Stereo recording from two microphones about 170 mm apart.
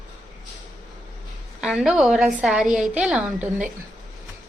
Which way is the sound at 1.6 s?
5° right (ahead or behind).